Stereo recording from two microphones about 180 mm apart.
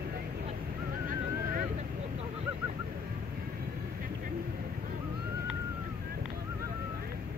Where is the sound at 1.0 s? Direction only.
50° right (ahead or behind).